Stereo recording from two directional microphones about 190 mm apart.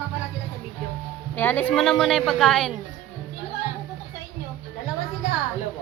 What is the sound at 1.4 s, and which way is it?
A woman's voice, 10° left (ahead or behind).